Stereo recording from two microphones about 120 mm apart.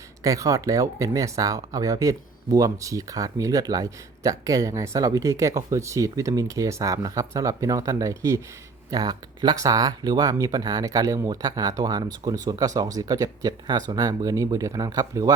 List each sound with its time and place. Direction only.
0.2 s speech: 25° right (ahead or behind)